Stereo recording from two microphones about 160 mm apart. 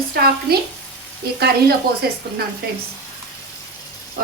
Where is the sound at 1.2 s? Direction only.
85° right.